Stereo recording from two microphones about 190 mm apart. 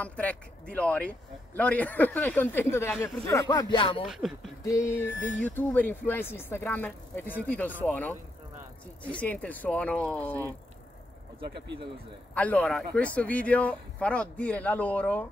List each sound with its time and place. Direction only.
0.0 s speech: 10° left (ahead or behind); by 4.0 s 25° left (ahead or behind)
4.2 s a sound: centre (ahead or behind)
4.6 s speech: 15° left (ahead or behind)
11.4 s speech: 60° right (ahead or behind)
12.4 s speech: 5° left (ahead or behind)